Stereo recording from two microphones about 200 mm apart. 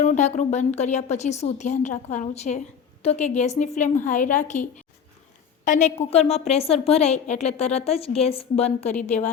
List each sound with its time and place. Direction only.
0.0 s a woman's voice: 35° left (ahead or behind)